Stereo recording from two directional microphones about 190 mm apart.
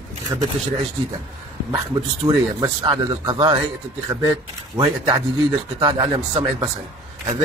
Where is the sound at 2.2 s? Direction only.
20° right (ahead or behind).